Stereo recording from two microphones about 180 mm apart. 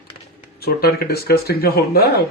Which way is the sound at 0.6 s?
60° left (ahead or behind).